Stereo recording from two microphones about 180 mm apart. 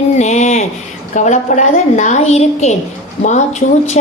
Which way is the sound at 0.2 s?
40° left (ahead or behind).